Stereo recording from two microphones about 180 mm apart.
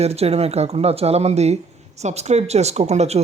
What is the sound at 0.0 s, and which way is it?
Speech, 35° right (ahead or behind).